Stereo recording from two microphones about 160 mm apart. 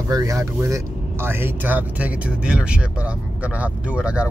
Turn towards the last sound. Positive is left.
turn(degrees=-5)  # may be behind; listen again after turning